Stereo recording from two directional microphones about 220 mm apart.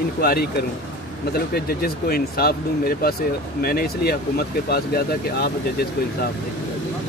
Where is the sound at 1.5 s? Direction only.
45° left (ahead or behind).